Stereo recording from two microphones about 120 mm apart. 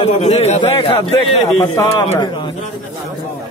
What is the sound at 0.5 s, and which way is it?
Speech, 50° left (ahead or behind).